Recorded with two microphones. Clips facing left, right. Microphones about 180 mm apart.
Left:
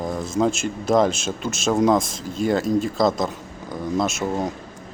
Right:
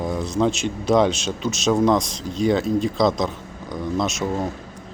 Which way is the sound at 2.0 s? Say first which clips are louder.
Right 1 dB; 55° left (ahead or behind).